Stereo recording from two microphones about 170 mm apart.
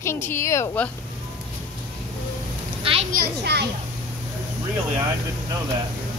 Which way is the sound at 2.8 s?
35° right (ahead or behind).